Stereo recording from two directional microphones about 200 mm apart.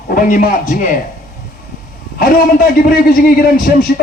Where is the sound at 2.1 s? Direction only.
45° left (ahead or behind).